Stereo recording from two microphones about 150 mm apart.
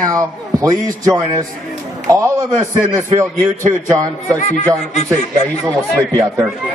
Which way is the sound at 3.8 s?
20° right (ahead or behind).